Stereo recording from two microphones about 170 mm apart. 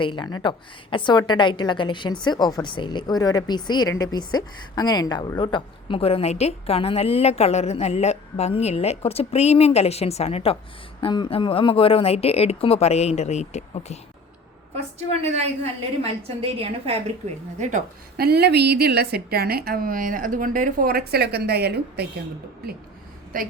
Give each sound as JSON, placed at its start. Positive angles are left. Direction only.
{"t": 0.0, "sound": "a woman's voice", "side_deg": 30}
{"t": 14.9, "sound": "a woman's voice", "side_deg": -40}
{"t": 17.6, "sound": "a woman's voice", "side_deg": -45}
{"t": 18.2, "sound": "a woman's voice", "side_deg": -70}
{"t": 23.3, "sound": "a woman's voice", "side_deg": -55}